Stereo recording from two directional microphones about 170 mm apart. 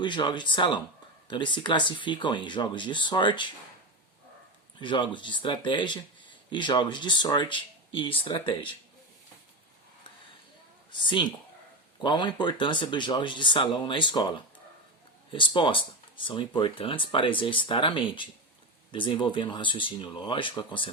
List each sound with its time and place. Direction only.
0.0 s speech: 25° left (ahead or behind)
4.8 s speech: 30° left (ahead or behind)
11.0 s speech: 30° left (ahead or behind)